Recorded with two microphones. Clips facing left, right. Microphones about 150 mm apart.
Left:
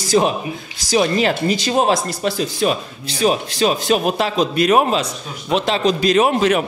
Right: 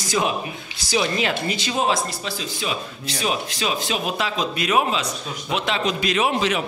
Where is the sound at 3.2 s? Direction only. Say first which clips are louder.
Left 8 dB; 40° left (ahead or behind).